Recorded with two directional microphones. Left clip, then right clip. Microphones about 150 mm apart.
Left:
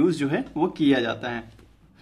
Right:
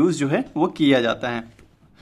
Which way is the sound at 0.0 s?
40° right (ahead or behind).